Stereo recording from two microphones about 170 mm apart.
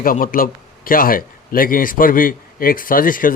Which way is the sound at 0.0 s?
55° left (ahead or behind).